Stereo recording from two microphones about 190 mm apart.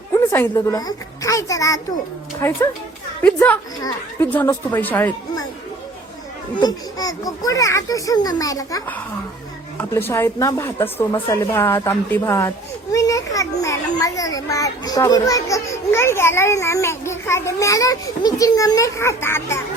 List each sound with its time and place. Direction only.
0.1 s a child's voice: 15° left (ahead or behind)
3.8 s a child's voice: 20° left (ahead or behind)
4.3 s a child's voice: 10° left (ahead or behind)
6.6 s a child's voice: 20° left (ahead or behind)